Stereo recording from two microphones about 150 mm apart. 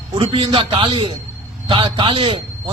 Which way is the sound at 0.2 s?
35° right (ahead or behind).